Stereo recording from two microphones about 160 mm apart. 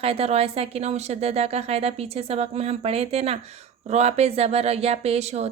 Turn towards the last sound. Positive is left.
turn(degrees=-45)  # may be behind; listen again after turning